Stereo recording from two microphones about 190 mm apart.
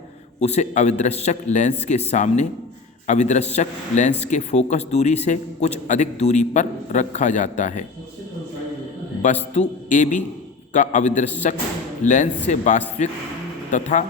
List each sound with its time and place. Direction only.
0.3 s a man's voice: 35° left (ahead or behind)
9.2 s a man's voice: 40° left (ahead or behind)